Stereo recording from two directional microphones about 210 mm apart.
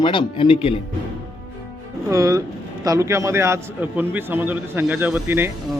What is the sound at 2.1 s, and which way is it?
A man's voice, 15° right (ahead or behind).